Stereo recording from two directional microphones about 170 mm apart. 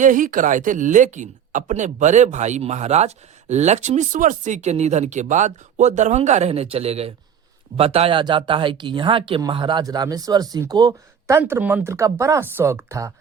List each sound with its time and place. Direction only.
0.0 s speech: 50° right (ahead or behind); by 13.1 s 15° right (ahead or behind)